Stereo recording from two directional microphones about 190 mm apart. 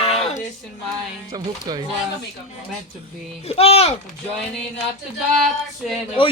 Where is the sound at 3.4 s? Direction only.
30° left (ahead or behind).